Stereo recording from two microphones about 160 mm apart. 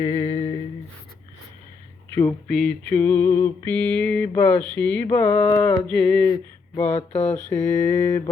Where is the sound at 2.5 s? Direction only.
5° left (ahead or behind).